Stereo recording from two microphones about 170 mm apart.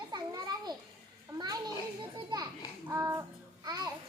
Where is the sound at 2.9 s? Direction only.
15° right (ahead or behind).